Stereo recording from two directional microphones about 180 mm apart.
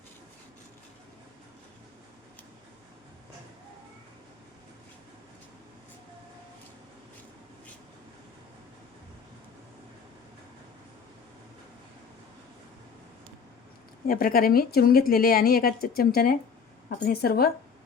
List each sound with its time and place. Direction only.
14.1 s a woman's voice: 55° left (ahead or behind)